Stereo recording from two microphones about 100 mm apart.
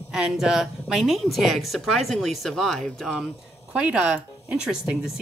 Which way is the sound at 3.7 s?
10° right (ahead or behind).